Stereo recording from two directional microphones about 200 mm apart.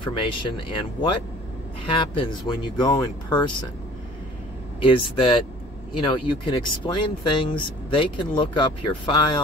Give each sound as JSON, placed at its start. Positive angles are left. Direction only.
{"t": 0.0, "sound": "speech", "side_deg": 25}
{"t": 1.9, "sound": "speech", "side_deg": 25}
{"t": 4.8, "sound": "speech", "side_deg": 25}